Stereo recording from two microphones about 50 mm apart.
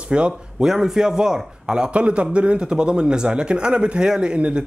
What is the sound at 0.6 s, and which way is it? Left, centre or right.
A man's voice, centre.